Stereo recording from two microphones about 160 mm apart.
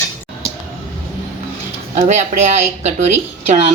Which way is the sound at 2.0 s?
55° right (ahead or behind).